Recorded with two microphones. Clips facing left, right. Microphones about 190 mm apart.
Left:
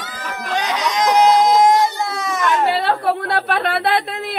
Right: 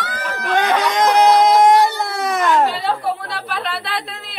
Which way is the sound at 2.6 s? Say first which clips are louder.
Left 3 dB; 65° left (ahead or behind).